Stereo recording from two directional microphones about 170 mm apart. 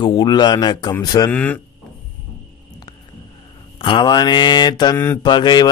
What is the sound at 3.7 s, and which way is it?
A man's voice, 30° left (ahead or behind).